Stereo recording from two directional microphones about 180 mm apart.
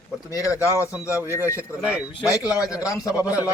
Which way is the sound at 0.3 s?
20° left (ahead or behind).